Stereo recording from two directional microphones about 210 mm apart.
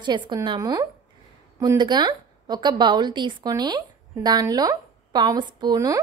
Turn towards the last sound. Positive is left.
turn(degrees=-15)  # may be behind; listen again after turning